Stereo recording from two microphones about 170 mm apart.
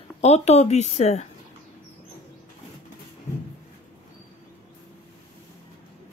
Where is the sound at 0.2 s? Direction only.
40° left (ahead or behind).